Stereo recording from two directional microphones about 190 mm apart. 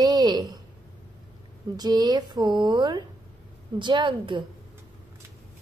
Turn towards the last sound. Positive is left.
turn(degrees=-25)  # may be behind; listen again after turning